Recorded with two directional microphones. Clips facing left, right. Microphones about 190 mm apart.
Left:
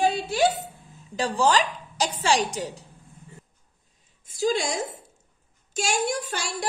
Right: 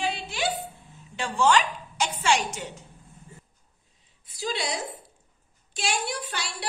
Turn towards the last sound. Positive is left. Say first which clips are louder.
# left 4 dB
turn(degrees=45)  # may be behind; listen again after turning